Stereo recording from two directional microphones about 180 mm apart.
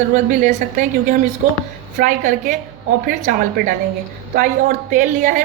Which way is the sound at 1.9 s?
50° right (ahead or behind).